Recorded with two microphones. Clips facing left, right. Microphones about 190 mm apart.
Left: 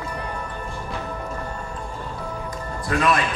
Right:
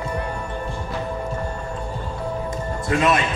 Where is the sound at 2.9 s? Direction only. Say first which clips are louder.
Right 1 dB; 25° right (ahead or behind).